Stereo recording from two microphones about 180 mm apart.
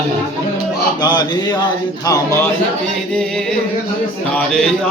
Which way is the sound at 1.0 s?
25° left (ahead or behind).